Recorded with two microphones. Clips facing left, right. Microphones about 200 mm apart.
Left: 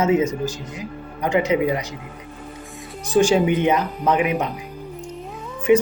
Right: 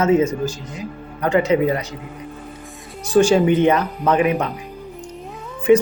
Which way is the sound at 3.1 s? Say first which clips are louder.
Right 3 dB; 15° left (ahead or behind).